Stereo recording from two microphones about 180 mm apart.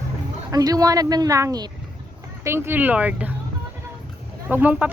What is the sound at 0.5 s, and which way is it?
A woman's voice, 20° right (ahead or behind).